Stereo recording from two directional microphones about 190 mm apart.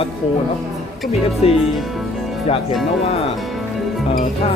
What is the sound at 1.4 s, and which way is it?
Speech, 35° left (ahead or behind).